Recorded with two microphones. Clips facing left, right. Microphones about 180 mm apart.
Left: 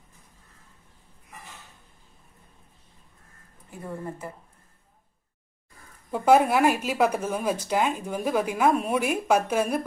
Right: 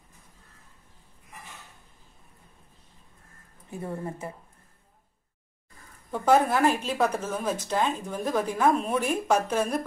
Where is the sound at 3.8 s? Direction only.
25° right (ahead or behind).